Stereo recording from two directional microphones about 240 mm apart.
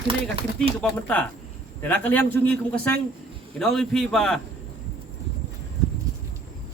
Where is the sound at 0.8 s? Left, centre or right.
Centre.